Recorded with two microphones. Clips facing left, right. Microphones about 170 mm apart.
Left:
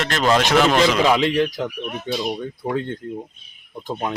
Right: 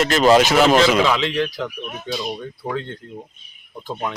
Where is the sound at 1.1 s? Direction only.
15° left (ahead or behind).